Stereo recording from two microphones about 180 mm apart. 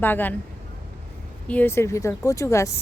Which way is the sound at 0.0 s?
10° left (ahead or behind).